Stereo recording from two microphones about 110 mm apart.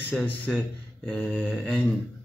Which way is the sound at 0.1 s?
5° left (ahead or behind).